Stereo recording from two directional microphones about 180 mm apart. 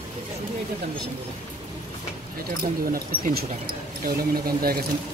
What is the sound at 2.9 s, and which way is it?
Speech, 55° right (ahead or behind).